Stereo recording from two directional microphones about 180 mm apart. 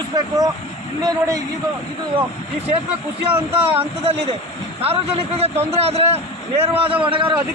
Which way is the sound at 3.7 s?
35° right (ahead or behind).